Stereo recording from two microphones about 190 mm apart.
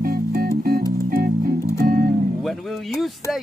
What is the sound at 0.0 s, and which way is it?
Music, 50° right (ahead or behind).